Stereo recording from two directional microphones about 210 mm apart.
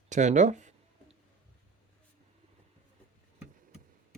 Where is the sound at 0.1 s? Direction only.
35° right (ahead or behind).